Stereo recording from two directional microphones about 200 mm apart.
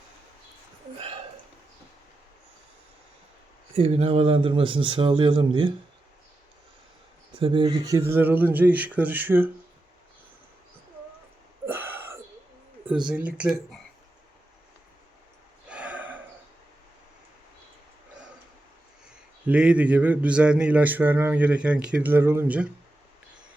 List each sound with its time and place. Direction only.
3.8 s a man's voice: 30° right (ahead or behind)
7.3 s speech: 25° right (ahead or behind); by 9.5 s 10° right (ahead or behind)
11.6 s a sound: 10° right (ahead or behind)
13.1 s speech: 5° right (ahead or behind)
15.7 s a sound: 5° right (ahead or behind)
19.5 s speech: 5° right (ahead or behind)